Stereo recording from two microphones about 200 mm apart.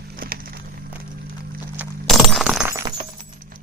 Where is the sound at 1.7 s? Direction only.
5° right (ahead or behind).